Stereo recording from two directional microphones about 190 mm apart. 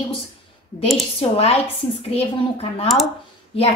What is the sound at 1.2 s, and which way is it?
A child's voice, 30° left (ahead or behind).